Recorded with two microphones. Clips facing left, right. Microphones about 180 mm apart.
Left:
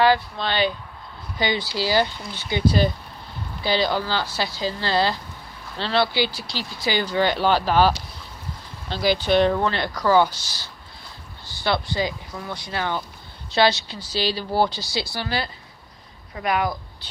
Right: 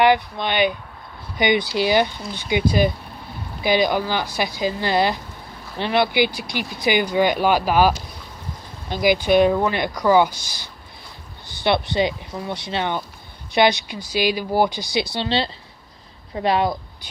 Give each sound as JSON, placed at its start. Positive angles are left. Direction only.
{"t": 0.0, "sound": "speech", "side_deg": -20}